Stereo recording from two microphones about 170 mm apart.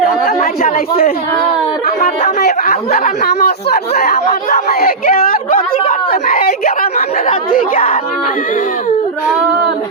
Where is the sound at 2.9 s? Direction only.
55° left (ahead or behind).